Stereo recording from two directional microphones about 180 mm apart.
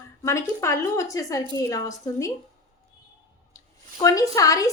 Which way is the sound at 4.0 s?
20° left (ahead or behind).